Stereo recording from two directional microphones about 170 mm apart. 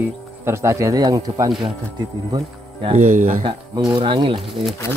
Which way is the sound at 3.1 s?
45° right (ahead or behind).